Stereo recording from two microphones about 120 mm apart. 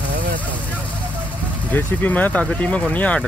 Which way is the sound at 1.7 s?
15° left (ahead or behind).